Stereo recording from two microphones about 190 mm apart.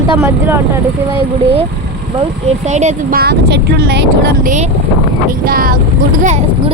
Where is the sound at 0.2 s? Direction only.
15° right (ahead or behind).